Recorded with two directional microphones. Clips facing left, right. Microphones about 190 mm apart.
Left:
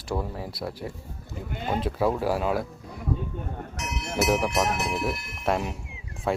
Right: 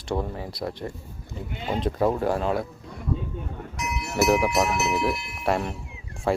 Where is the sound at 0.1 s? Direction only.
Centre (ahead or behind).